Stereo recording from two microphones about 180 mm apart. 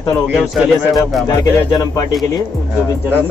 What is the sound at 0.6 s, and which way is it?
Speech, centre (ahead or behind).